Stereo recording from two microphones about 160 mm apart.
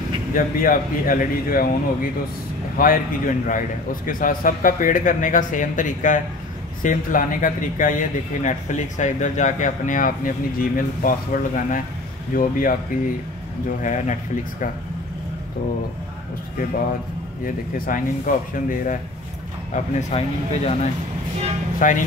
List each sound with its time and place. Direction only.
0.3 s a man's voice: 60° left (ahead or behind)
2.8 s a man's voice: 60° left (ahead or behind)
17.7 s a man's voice: 60° left (ahead or behind)
19.7 s speech: 45° left (ahead or behind)
21.8 s a man's voice: 55° left (ahead or behind)